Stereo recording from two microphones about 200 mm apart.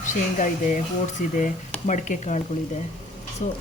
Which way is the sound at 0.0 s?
40° left (ahead or behind).